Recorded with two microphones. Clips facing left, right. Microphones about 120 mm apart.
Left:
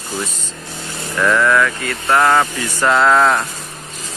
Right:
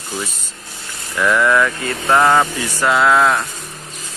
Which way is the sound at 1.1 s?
10° right (ahead or behind).